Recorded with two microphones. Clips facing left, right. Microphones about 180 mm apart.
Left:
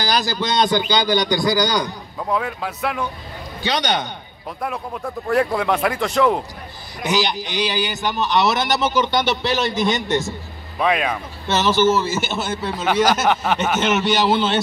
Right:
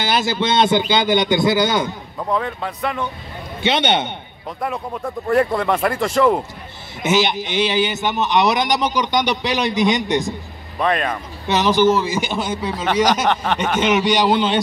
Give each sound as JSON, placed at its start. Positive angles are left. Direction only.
{"t": 0.0, "sound": "a man's voice", "side_deg": -25}
{"t": 2.1, "sound": "speech", "side_deg": 5}
{"t": 3.6, "sound": "a man's voice", "side_deg": -25}
{"t": 5.3, "sound": "speech", "side_deg": 0}
{"t": 7.0, "sound": "a man's voice", "side_deg": -20}
{"t": 10.8, "sound": "speech", "side_deg": 5}
{"t": 11.4, "sound": "speech", "side_deg": -15}
{"t": 12.8, "sound": "speech", "side_deg": 5}